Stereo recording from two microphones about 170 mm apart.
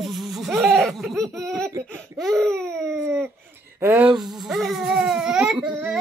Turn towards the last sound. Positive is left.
turn(degrees=-5)  # may be behind; listen again after turning